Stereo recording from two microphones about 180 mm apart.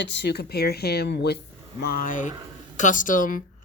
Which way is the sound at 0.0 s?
75° left (ahead or behind).